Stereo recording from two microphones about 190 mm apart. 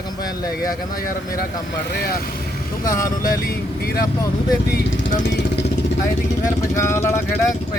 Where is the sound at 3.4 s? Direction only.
50° left (ahead or behind).